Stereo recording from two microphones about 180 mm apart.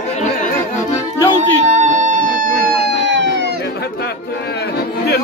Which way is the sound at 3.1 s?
80° right.